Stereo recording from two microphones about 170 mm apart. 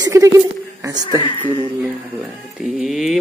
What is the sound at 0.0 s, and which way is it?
A woman's voice, 20° right (ahead or behind).